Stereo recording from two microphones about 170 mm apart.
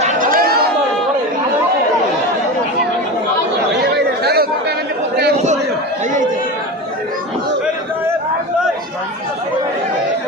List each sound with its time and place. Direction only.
0.0 s chatter: 55° right (ahead or behind)
3.9 s chatter: 70° right (ahead or behind)